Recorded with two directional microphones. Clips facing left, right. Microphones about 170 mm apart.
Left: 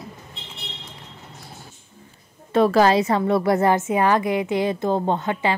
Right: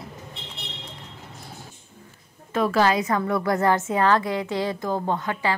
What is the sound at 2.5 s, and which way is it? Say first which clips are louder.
Speech: left 5 dB; 35° left (ahead or behind).